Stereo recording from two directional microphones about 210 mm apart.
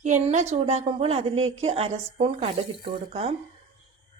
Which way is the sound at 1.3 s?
75° right (ahead or behind).